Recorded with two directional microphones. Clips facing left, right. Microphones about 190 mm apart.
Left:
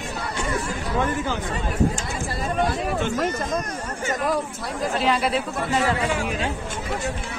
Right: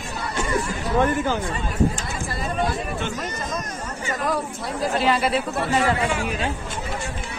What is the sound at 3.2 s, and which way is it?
Speech, 55° left (ahead or behind).